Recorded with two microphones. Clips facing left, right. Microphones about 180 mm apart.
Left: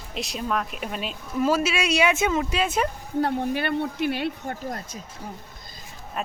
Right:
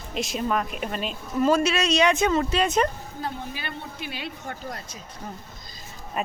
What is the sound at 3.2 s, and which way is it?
A woman's voice, 60° left (ahead or behind).